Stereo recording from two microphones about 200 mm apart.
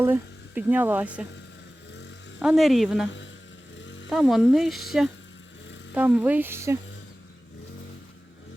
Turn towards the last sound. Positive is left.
turn(degrees=-15)  # may be behind; listen again after turning